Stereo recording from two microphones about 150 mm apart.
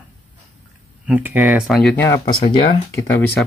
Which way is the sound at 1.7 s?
Centre (ahead or behind).